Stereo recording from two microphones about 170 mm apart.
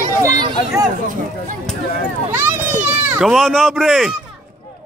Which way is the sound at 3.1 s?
Centre (ahead or behind).